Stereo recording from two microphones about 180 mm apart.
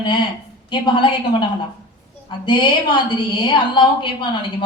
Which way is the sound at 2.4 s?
25° left (ahead or behind).